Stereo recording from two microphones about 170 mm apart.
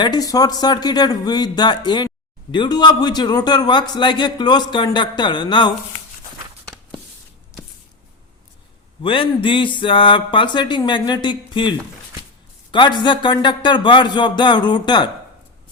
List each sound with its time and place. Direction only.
0.0 s speech: 20° left (ahead or behind)
9.0 s speech: 30° left (ahead or behind)
12.7 s speech: 25° left (ahead or behind)